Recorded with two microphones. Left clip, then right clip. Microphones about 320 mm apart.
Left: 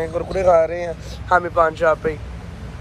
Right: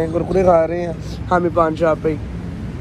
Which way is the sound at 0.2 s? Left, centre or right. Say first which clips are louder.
Right 1 dB; left.